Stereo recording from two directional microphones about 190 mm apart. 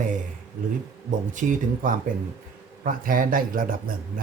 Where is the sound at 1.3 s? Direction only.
40° right (ahead or behind).